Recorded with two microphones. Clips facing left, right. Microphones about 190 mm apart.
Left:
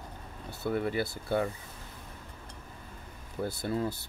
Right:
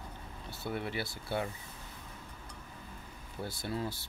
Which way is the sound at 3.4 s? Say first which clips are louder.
Left 7 dB; 50° left (ahead or behind).